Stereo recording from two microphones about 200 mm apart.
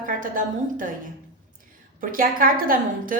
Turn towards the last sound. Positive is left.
turn(degrees=-45)  # may be behind; listen again after turning